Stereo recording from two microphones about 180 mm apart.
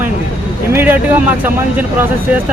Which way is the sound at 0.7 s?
10° right (ahead or behind).